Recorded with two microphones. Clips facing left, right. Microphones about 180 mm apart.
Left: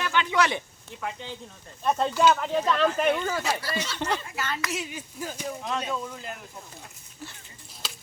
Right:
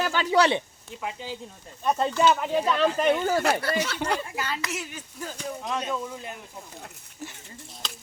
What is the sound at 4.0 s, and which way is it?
Speech, 10° right (ahead or behind).